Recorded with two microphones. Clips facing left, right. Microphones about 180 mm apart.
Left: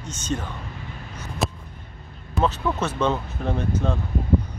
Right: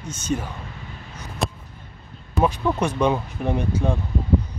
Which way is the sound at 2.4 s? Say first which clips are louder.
Right 2 dB; 15° right (ahead or behind).